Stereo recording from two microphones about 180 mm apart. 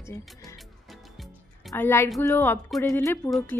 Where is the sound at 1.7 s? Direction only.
15° left (ahead or behind).